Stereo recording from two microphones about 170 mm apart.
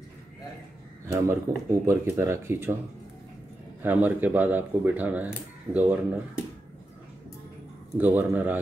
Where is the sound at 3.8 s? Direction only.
10° right (ahead or behind).